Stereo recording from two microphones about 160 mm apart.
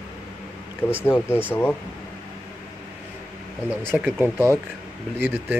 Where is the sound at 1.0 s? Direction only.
15° left (ahead or behind).